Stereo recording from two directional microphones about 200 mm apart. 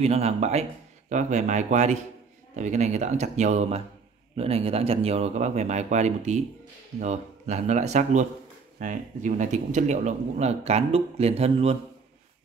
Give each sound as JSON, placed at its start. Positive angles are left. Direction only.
{"t": 0.0, "sound": "a man's voice", "side_deg": -30}